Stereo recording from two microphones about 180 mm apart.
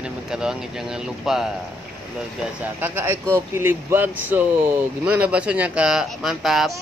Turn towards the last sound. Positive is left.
turn(degrees=0)  # may be behind; listen again after turning